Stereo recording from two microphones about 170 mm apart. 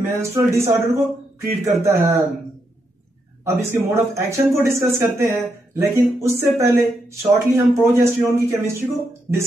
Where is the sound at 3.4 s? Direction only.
15° right (ahead or behind).